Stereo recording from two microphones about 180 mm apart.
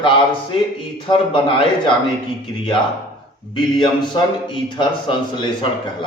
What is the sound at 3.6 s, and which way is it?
A man's voice, 25° left (ahead or behind).